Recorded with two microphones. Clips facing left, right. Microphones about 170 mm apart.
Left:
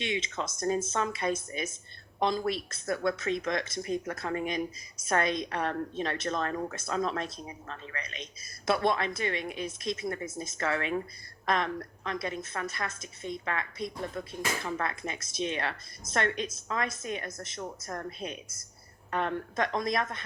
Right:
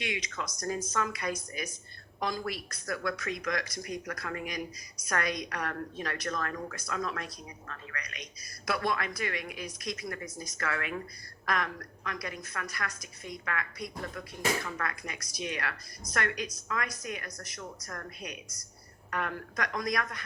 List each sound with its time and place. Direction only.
0.0 s speech: 25° left (ahead or behind)